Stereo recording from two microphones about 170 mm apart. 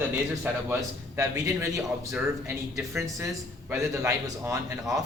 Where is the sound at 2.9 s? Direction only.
15° right (ahead or behind).